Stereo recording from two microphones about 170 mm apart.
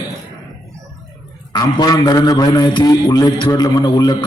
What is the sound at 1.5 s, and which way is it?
Music, 20° left (ahead or behind).